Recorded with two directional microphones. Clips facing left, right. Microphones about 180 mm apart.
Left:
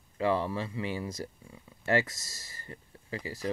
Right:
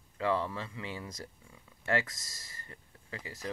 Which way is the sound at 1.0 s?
30° left (ahead or behind).